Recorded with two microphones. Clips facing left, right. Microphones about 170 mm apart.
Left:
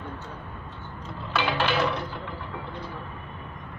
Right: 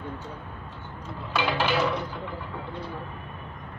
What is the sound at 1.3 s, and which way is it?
Dishes, 10° right (ahead or behind).